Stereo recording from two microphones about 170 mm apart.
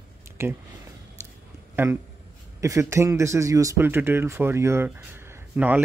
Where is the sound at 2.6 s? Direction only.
15° right (ahead or behind).